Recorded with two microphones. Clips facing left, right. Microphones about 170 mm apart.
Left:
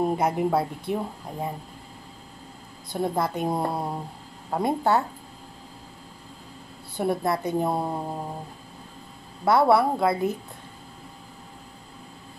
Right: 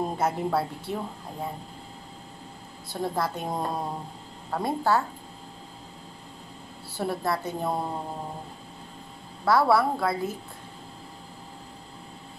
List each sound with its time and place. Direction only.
0.0 s a woman's voice: 15° left (ahead or behind)
2.9 s a woman's voice: 15° left (ahead or behind)
7.0 s a woman's voice: 20° left (ahead or behind)
9.4 s a woman's voice: 20° left (ahead or behind)